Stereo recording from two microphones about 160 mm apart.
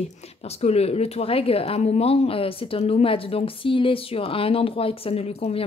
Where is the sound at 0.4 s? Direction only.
40° left (ahead or behind).